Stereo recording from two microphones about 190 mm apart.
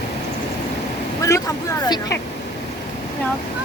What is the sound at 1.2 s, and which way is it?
Speech, 15° left (ahead or behind).